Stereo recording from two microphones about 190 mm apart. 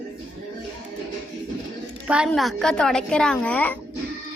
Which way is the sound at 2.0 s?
5° right (ahead or behind).